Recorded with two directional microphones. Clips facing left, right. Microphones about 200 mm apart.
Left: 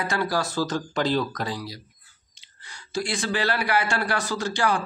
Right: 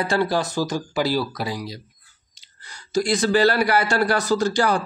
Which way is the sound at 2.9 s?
40° right (ahead or behind).